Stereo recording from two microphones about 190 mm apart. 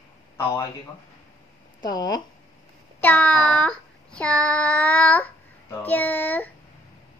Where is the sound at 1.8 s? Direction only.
20° left (ahead or behind).